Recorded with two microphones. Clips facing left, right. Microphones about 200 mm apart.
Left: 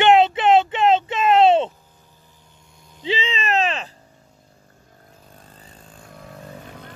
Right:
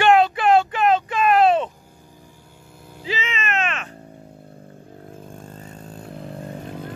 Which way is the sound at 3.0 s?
30° left (ahead or behind).